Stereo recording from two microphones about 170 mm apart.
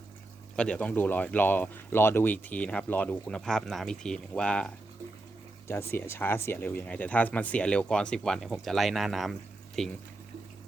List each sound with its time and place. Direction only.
0.5 s speech: 5° left (ahead or behind)